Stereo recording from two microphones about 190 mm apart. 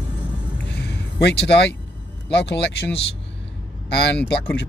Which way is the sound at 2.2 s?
65° left (ahead or behind).